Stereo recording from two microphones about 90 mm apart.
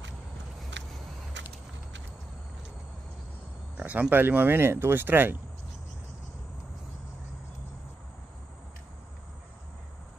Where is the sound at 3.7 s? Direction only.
15° right (ahead or behind).